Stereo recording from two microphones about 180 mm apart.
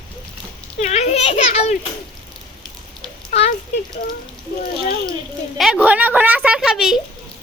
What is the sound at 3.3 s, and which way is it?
Speech, 35° left (ahead or behind).